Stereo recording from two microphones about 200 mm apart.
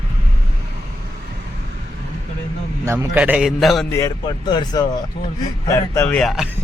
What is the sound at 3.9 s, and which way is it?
Speech, 20° left (ahead or behind).